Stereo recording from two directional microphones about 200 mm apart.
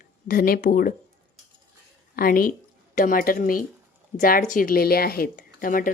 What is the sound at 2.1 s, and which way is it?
A woman's voice, 45° left (ahead or behind).